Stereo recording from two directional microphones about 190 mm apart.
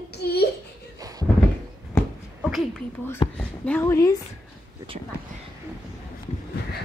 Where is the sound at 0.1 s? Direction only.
60° left (ahead or behind).